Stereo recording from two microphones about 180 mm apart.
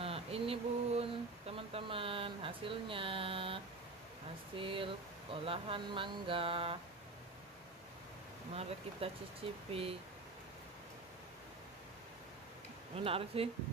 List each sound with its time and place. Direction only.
0.0 s a sound: 30° right (ahead or behind)
4.6 s speech: 30° right (ahead or behind)
8.5 s speech: 35° right (ahead or behind)
12.9 s speech: 30° right (ahead or behind)